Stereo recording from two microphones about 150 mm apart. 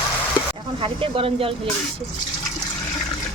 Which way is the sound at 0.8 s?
35° right (ahead or behind).